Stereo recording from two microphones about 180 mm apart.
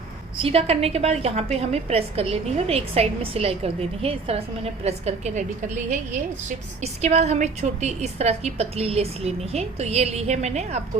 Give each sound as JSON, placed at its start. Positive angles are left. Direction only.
{"t": 0.3, "sound": "a woman's voice", "side_deg": -35}